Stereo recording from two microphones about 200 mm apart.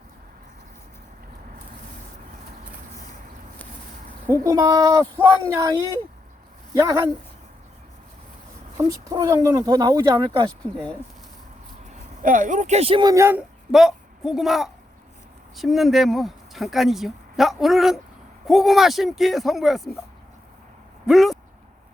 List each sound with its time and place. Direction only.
4.4 s speech: 20° right (ahead or behind)
6.7 s speech: 20° right (ahead or behind)
8.8 s speech: 15° right (ahead or behind)
12.2 s speech: 40° right (ahead or behind); by 13.4 s 15° right (ahead or behind)
13.7 s speech: centre (ahead or behind)
21.1 s speech: centre (ahead or behind)